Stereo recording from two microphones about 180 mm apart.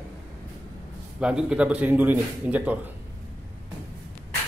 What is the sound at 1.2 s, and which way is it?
Speech, 5° right (ahead or behind).